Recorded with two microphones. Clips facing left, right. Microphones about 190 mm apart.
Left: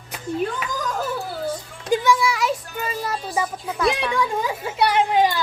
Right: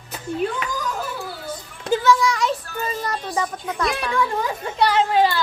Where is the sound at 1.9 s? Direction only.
10° left (ahead or behind).